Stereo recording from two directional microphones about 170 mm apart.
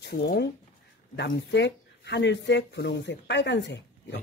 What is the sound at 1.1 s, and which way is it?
Speech, 90° left.